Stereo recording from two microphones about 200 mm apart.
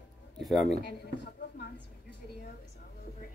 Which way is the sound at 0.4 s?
Centre (ahead or behind).